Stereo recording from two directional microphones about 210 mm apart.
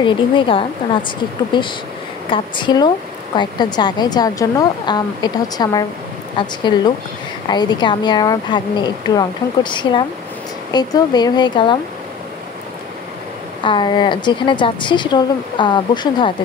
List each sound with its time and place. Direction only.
0.0 s speech: 25° left (ahead or behind)
13.7 s speech: 20° left (ahead or behind)